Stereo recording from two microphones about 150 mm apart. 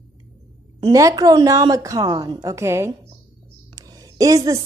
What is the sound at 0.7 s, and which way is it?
A woman's voice, 25° right (ahead or behind).